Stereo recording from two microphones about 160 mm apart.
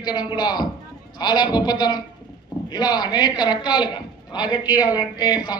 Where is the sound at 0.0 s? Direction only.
25° left (ahead or behind).